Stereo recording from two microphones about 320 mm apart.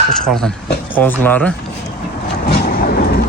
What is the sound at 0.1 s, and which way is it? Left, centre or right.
Speech, centre.